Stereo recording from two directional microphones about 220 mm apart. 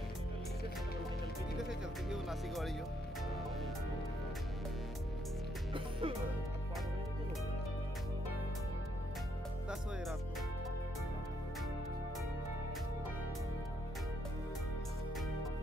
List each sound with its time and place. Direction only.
1.6 s speech: centre (ahead or behind)
5.7 s music: 25° right (ahead or behind)